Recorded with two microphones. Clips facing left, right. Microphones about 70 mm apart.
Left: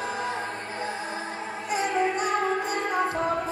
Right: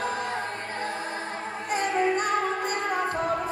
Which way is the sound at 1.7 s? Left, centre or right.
Right.